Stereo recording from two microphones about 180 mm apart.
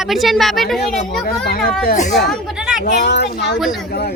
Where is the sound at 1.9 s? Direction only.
40° left (ahead or behind).